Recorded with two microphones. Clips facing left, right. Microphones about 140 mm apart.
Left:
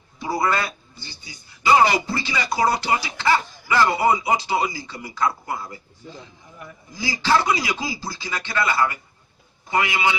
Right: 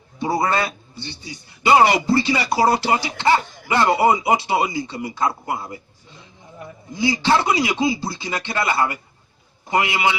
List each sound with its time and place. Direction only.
0.2 s a man's voice: 25° right (ahead or behind)